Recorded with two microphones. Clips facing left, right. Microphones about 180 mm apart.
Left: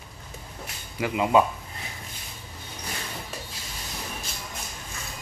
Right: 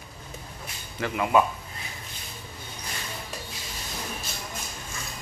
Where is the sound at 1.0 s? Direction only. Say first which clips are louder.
Left 2 dB; 15° left (ahead or behind).